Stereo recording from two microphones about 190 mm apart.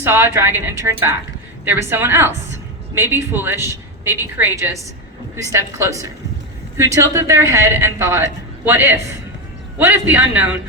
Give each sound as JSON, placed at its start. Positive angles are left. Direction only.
{"t": 0.0, "sound": "speech", "side_deg": -10}